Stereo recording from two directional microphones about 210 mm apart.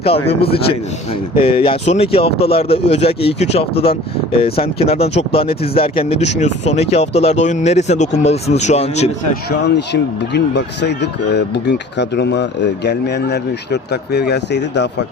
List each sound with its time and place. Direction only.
0.3 s speech: 25° left (ahead or behind)
9.5 s speech: 55° left (ahead or behind)